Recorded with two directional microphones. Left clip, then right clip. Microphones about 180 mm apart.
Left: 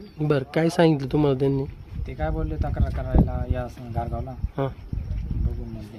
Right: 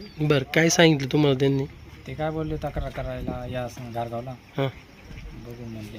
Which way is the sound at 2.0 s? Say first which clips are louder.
Right 1 dB; 25° right (ahead or behind).